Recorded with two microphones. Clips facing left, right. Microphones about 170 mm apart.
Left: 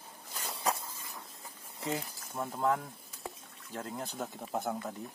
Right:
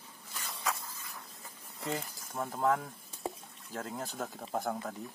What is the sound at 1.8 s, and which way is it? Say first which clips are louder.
Speech: left 1 dB; 5° left (ahead or behind).